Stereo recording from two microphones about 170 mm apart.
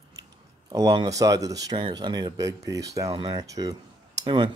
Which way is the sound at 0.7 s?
25° right (ahead or behind).